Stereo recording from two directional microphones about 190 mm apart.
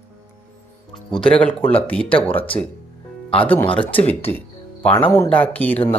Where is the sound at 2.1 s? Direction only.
30° left (ahead or behind).